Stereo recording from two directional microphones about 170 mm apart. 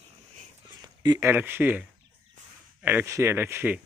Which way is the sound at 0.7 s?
20° right (ahead or behind).